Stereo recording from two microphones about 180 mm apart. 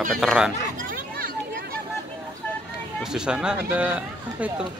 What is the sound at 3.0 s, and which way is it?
Speech, 5° right (ahead or behind).